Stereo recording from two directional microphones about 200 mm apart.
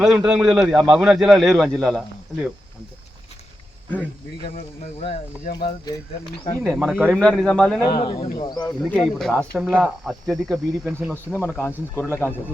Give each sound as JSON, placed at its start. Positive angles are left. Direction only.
{"t": 0.0, "sound": "speech", "side_deg": 0}
{"t": 4.9, "sound": "speech", "side_deg": 25}
{"t": 6.7, "sound": "speech", "side_deg": 0}
{"t": 8.1, "sound": "speech", "side_deg": 25}
{"t": 8.9, "sound": "speech", "side_deg": 0}
{"t": 11.3, "sound": "speech", "side_deg": 10}